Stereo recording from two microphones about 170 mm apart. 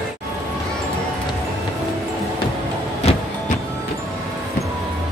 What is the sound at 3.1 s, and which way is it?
Music, 40° left (ahead or behind).